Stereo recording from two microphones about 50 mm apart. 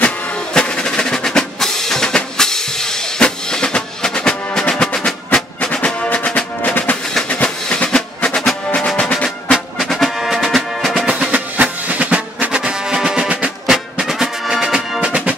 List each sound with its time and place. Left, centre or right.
0.0 s music: centre
7.4 s music: centre
9.5 s music: centre
11.3 s music: right
14.0 s music: centre; by 15.3 s right